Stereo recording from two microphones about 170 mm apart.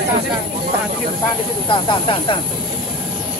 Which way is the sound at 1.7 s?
30° left (ahead or behind).